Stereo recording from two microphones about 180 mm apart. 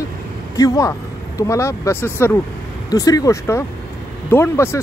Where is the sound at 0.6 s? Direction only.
20° left (ahead or behind).